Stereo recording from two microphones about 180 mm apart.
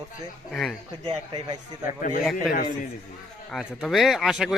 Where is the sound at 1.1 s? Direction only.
25° right (ahead or behind).